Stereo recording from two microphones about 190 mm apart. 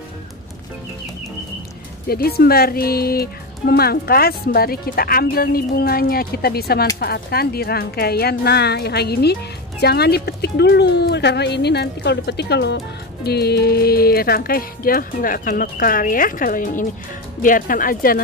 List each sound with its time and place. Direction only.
2.0 s speech: 55° left (ahead or behind)